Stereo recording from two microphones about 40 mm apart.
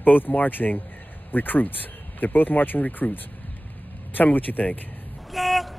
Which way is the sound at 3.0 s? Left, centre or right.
Left.